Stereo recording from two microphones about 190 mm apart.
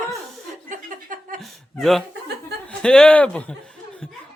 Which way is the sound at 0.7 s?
45° right (ahead or behind).